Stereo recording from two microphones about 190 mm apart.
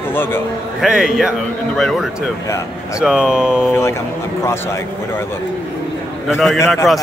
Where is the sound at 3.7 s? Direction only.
15° left (ahead or behind).